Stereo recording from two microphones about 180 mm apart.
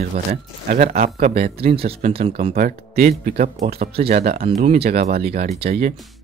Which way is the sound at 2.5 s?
55° right (ahead or behind).